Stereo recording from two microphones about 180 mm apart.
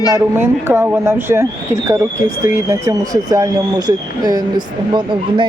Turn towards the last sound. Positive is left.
turn(degrees=-25)  # may be behind; listen again after turning